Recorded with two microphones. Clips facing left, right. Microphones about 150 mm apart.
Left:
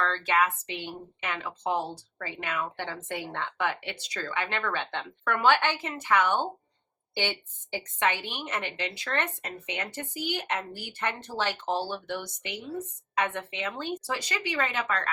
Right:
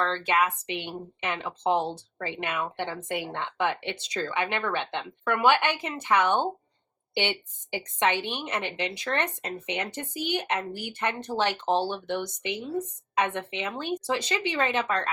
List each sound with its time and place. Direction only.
0.0 s a woman's voice: 20° right (ahead or behind)